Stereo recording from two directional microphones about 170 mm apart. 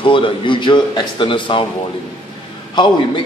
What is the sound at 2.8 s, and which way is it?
Speech, 25° left (ahead or behind).